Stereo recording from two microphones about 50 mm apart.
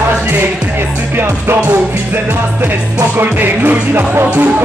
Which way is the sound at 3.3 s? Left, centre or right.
Right.